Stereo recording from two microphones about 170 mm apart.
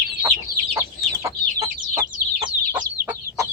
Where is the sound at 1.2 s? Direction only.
20° right (ahead or behind).